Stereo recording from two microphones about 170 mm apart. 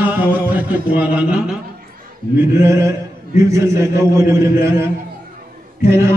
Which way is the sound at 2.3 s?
15° right (ahead or behind).